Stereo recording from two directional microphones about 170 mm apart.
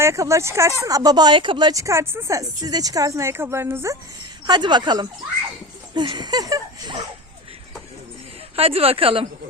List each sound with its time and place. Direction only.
0.0 s speech: 15° right (ahead or behind)
4.4 s speech: 25° right (ahead or behind)
8.5 s speech: 35° right (ahead or behind)